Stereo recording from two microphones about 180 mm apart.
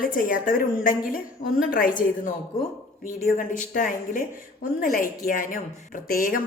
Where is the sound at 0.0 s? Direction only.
50° left (ahead or behind).